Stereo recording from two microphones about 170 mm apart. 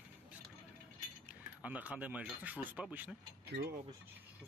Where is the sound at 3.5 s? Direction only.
65° right (ahead or behind).